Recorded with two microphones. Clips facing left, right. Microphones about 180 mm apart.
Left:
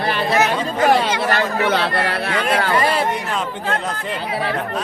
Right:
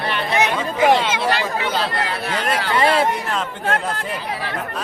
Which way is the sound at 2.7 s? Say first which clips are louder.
Right 5 dB; 25° right (ahead or behind).